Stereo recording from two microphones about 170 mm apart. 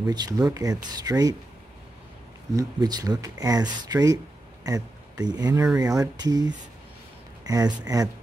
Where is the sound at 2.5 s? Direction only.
20° right (ahead or behind).